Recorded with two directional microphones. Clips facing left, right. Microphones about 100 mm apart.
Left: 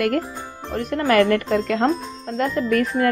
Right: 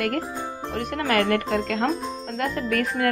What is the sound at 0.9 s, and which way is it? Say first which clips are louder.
Speech: left 6 dB; 40° left (ahead or behind).